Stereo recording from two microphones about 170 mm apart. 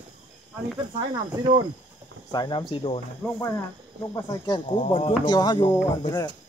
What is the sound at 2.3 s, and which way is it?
Speech, 25° left (ahead or behind).